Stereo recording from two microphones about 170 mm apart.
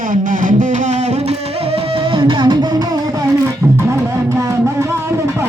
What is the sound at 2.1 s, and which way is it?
Music, 30° right (ahead or behind).